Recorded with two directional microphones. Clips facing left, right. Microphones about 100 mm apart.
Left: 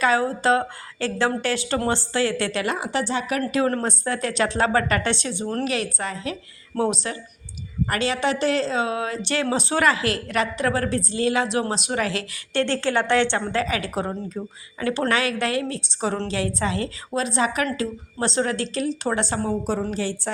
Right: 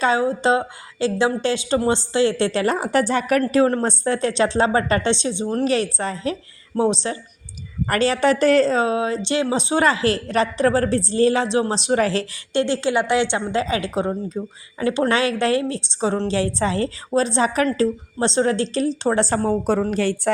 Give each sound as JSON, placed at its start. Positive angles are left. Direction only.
{"t": 0.0, "sound": "a woman's voice", "side_deg": -20}
{"t": 2.9, "sound": "a woman's voice", "side_deg": -50}
{"t": 3.4, "sound": "a woman's voice", "side_deg": -30}
{"t": 5.6, "sound": "a woman's voice", "side_deg": -35}
{"t": 7.9, "sound": "a woman's voice", "side_deg": -40}
{"t": 12.5, "sound": "a woman's voice", "side_deg": -15}
{"t": 14.8, "sound": "a woman's voice", "side_deg": -25}